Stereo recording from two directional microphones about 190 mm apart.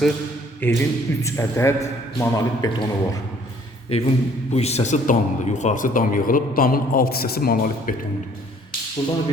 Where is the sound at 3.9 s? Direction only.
30° left (ahead or behind); by 8.0 s 50° left (ahead or behind).